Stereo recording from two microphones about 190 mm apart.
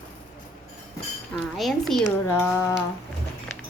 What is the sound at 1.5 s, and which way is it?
Speech, centre (ahead or behind).